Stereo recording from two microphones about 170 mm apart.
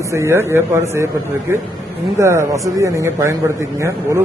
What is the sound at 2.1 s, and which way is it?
A man's voice, 15° right (ahead or behind).